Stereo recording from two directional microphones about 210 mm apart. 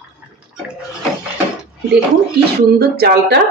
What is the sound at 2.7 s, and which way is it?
Speech, 50° right (ahead or behind).